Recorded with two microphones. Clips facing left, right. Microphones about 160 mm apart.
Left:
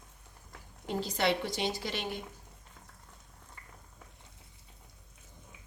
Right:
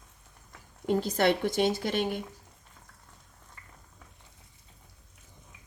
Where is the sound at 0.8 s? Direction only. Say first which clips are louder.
Right 5 dB; 50° right (ahead or behind).